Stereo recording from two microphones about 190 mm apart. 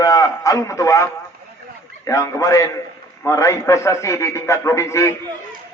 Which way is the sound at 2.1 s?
20° left (ahead or behind).